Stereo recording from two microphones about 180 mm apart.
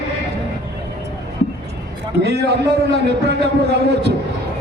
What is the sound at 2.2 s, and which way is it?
Speech, 65° right (ahead or behind).